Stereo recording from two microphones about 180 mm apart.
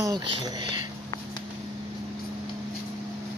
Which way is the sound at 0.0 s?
25° right (ahead or behind).